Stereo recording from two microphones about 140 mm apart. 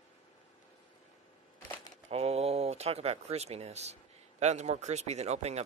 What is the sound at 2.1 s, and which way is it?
Speech, 50° right (ahead or behind).